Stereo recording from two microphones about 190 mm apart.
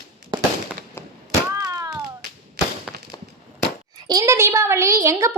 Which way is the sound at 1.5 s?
15° right (ahead or behind).